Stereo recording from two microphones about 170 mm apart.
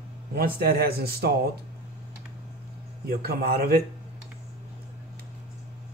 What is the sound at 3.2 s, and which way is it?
Speech, 65° right (ahead or behind).